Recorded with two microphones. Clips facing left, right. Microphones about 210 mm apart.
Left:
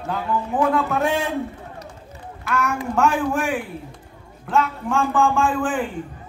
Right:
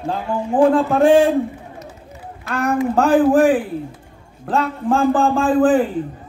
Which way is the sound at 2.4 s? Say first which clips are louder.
Right 5 dB; 35° right (ahead or behind).